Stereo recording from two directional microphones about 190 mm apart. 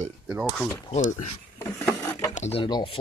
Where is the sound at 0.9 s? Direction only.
40° left (ahead or behind).